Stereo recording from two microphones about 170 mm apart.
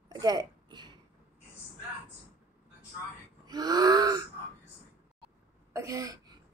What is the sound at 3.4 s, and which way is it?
Gasp, 25° right (ahead or behind).